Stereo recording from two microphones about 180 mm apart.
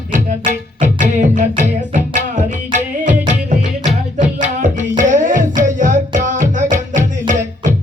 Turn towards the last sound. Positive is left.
turn(degrees=-45)  # may be behind; listen again after turning